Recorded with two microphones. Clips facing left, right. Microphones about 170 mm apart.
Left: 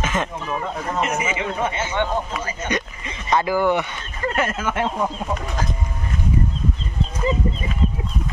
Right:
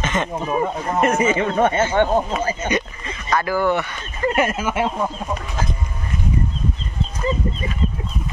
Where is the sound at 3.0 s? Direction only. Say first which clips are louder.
Left 1 dB; 20° left (ahead or behind).